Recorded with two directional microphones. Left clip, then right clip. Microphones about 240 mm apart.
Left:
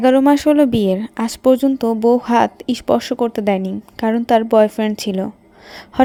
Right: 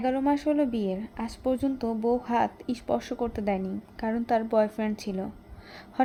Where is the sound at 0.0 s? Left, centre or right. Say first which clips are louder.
Left 14 dB; left.